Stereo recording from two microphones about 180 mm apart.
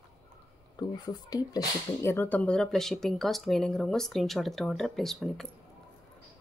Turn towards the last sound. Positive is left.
turn(degrees=0)  # may be behind; listen again after turning